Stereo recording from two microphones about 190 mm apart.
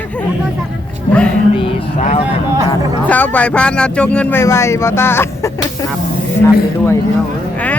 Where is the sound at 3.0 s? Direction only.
10° left (ahead or behind).